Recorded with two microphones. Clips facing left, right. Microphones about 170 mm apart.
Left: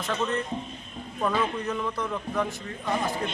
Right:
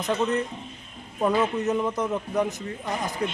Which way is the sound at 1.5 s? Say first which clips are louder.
Right 5 dB; 25° right (ahead or behind).